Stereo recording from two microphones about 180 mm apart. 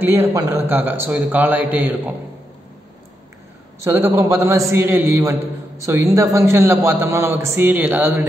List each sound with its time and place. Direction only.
0.0 s a man's voice: 15° right (ahead or behind)
3.8 s a man's voice: 15° right (ahead or behind)